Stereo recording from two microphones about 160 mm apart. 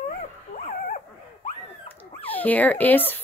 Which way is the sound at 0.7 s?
55° left (ahead or behind).